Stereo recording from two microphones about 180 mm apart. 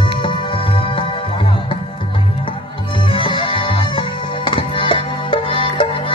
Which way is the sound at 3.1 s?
30° left (ahead or behind).